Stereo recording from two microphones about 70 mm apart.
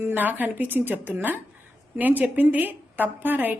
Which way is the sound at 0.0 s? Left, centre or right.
Right.